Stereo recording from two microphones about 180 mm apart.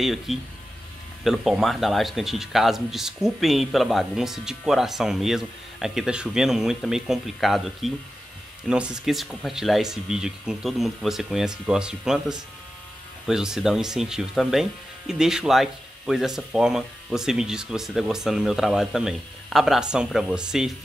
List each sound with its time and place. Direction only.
0.0 s speech: centre (ahead or behind)